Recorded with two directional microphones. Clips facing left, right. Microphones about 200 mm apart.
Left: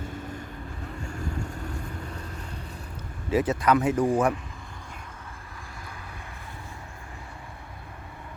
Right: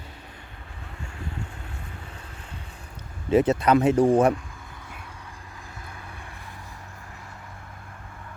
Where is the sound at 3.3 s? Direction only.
25° right (ahead or behind).